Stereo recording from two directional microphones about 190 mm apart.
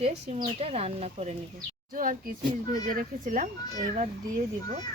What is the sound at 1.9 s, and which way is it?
A child's voice, 45° right (ahead or behind).